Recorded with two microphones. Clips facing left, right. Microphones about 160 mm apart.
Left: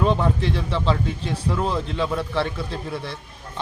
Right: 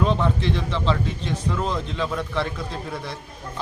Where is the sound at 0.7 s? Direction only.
5° left (ahead or behind).